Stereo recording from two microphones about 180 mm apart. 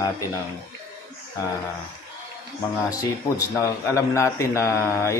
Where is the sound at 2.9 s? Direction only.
20° left (ahead or behind).